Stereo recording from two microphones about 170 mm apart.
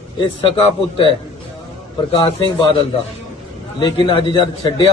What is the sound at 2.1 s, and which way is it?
Speech, 35° left (ahead or behind).